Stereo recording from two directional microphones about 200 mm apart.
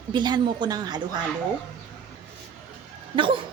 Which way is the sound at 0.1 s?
20° right (ahead or behind).